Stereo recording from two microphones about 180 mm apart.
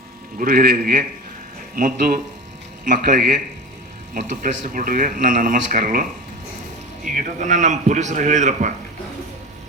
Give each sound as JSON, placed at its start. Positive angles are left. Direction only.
{"t": 0.3, "sound": "a man's voice", "side_deg": -55}
{"t": 4.7, "sound": "a man's voice", "side_deg": -50}